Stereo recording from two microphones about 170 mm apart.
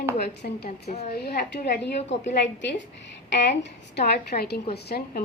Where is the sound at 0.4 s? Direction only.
55° left (ahead or behind).